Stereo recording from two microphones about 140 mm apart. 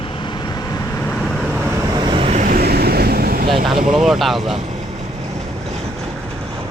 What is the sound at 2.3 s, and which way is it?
Vehicle, 70° right (ahead or behind).